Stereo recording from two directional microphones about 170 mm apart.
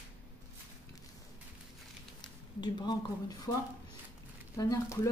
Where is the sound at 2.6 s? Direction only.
25° left (ahead or behind).